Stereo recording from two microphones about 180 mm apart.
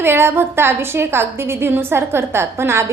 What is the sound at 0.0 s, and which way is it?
A woman's voice, 15° right (ahead or behind).